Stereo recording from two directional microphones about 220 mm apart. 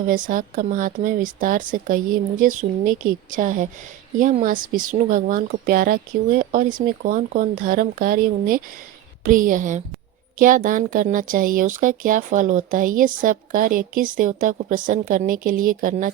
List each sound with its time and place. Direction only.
0.0 s speech: 35° right (ahead or behind)